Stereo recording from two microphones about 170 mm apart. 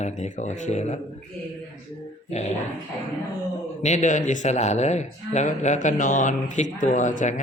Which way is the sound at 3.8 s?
45° left (ahead or behind).